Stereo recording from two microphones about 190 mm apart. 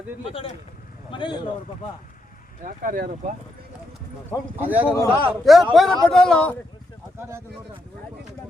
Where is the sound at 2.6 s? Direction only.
45° right (ahead or behind).